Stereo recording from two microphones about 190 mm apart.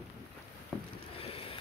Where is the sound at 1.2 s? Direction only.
30° left (ahead or behind).